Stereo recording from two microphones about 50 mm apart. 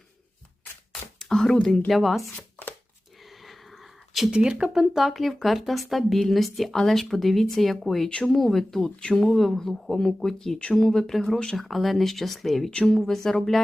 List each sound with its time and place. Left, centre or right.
1.2 s a sound: centre
1.9 s speech: centre
2.3 s chopping: left
3.2 s a sound: centre
4.3 s speech: centre
4.8 s speech: centre
9.0 s speech: centre
9.2 s speech: centre
12.7 s speech: centre
13.0 s speech: centre